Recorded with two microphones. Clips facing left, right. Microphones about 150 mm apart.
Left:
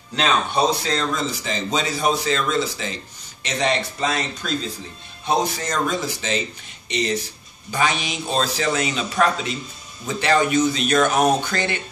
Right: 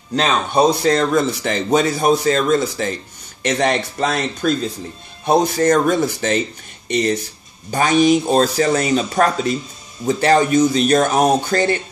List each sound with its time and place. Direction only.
0.8 s a man's voice: 60° right (ahead or behind); by 11.8 s 40° right (ahead or behind)